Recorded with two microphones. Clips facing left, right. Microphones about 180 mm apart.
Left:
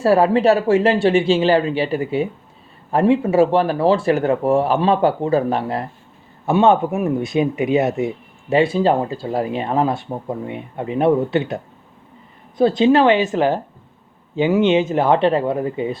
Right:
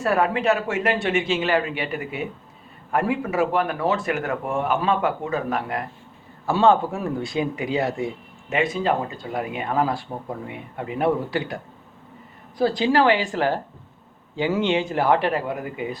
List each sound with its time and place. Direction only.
0.0 s speech: 30° left (ahead or behind)